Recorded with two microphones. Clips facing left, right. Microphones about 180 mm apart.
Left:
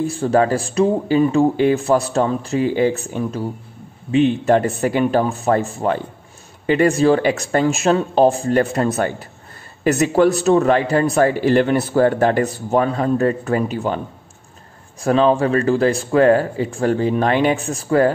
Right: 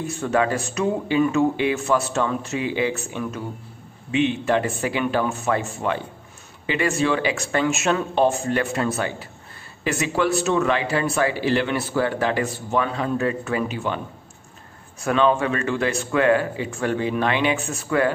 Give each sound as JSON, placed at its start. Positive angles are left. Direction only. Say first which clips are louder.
{"t": 0.0, "sound": "a man's voice", "louder": "left 5 dB", "side_deg": 35}
{"t": 15.0, "sound": "speech", "louder": "left 4 dB", "side_deg": 35}